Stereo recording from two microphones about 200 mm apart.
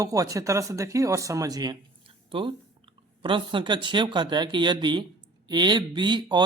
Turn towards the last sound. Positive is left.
turn(degrees=-20)  # may be behind; listen again after turning